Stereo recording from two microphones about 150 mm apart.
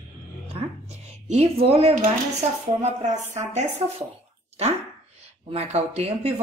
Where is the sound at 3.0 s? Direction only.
50° right (ahead or behind).